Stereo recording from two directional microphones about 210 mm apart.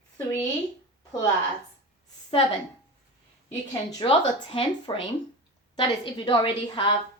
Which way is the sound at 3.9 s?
25° left (ahead or behind).